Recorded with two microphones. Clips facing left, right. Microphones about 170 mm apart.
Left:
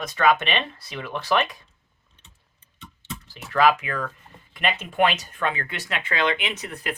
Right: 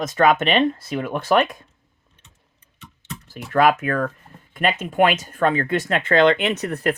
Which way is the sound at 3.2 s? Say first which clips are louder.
Right 3 dB; 50° right (ahead or behind).